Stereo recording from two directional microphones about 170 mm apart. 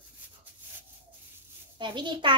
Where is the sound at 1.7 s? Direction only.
25° right (ahead or behind).